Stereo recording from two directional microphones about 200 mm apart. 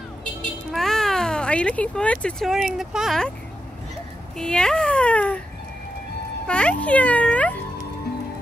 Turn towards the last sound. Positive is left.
turn(degrees=5)  # may be behind; listen again after turning